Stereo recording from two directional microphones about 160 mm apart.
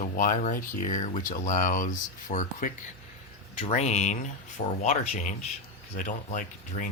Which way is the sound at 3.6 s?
45° left (ahead or behind).